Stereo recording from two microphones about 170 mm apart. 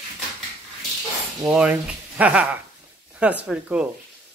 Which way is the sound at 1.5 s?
5° right (ahead or behind).